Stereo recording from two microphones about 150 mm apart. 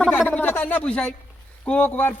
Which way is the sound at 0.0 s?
5° left (ahead or behind).